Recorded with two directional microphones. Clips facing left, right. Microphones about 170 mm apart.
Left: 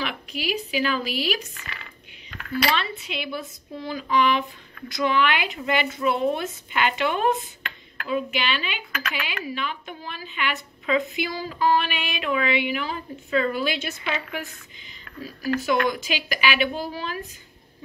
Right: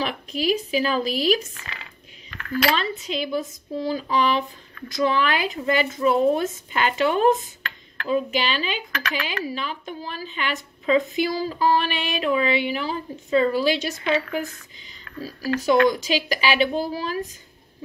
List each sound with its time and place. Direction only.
0.0 s speech: 40° right (ahead or behind)
2.7 s speech: 40° right (ahead or behind)
15.1 s speech: 35° right (ahead or behind)